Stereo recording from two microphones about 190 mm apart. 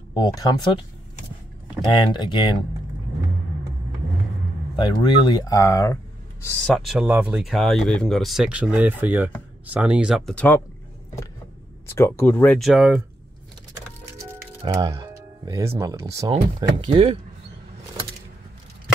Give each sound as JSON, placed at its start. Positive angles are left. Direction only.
{"t": 0.1, "sound": "speech", "side_deg": 20}
{"t": 2.0, "sound": "speech", "side_deg": 25}
{"t": 4.7, "sound": "speech", "side_deg": 25}
{"t": 6.6, "sound": "speech", "side_deg": 0}
{"t": 11.9, "sound": "speech", "side_deg": 10}
{"t": 14.6, "sound": "speech", "side_deg": -25}